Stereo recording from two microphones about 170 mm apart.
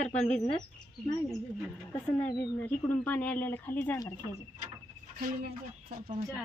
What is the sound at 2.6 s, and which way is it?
Speech, 10° left (ahead or behind).